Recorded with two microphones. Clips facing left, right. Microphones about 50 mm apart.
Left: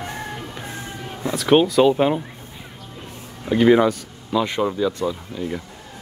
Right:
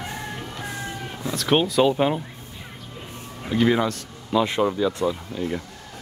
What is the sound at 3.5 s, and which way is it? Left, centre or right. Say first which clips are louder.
Speech: left 6 dB; centre.